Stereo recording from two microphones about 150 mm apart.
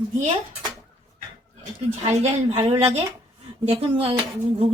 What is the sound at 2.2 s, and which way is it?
Speech, 45° right (ahead or behind).